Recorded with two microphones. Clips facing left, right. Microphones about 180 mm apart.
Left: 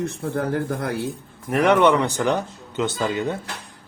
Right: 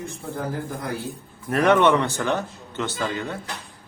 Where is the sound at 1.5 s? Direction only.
15° left (ahead or behind).